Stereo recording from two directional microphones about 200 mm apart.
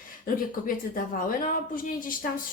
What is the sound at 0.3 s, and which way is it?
A woman's voice, 45° left (ahead or behind).